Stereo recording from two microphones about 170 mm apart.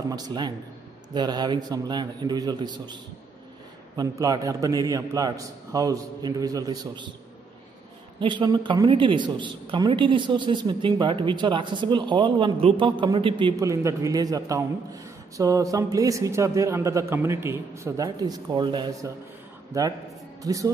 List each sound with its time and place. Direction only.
0.1 s a woman's voice: 25° right (ahead or behind)
8.2 s a woman's voice: 30° right (ahead or behind)
19.7 s a man's voice: 15° right (ahead or behind)